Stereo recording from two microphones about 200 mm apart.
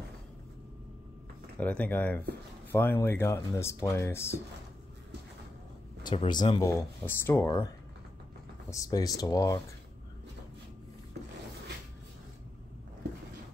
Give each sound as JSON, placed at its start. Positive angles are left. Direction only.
{"t": 1.6, "sound": "speech", "side_deg": 5}
{"t": 6.0, "sound": "speech", "side_deg": 20}
{"t": 8.6, "sound": "speech", "side_deg": 15}